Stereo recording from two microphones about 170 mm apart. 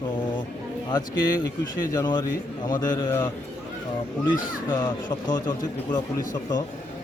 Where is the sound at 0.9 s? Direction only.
25° left (ahead or behind).